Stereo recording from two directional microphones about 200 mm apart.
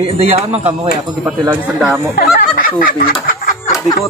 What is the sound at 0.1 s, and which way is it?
A man's voice, 30° right (ahead or behind).